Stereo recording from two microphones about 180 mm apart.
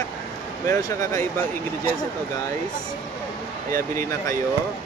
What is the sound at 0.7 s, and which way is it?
Speech, 20° left (ahead or behind).